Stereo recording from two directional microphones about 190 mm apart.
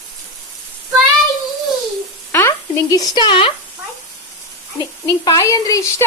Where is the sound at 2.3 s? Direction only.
15° left (ahead or behind).